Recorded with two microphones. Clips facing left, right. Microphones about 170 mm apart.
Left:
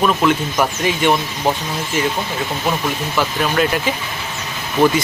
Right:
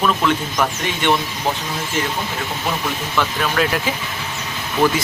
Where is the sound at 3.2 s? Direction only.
5° left (ahead or behind).